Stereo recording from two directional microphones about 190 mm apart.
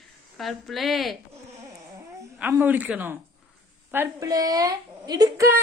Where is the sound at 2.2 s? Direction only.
15° right (ahead or behind).